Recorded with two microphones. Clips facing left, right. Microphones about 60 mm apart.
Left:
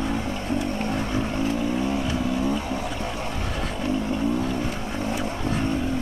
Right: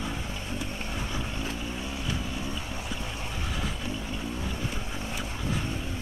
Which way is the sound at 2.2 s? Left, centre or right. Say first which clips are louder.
Left 10 dB; left.